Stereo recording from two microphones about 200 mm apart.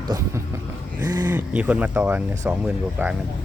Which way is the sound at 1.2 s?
5° right (ahead or behind).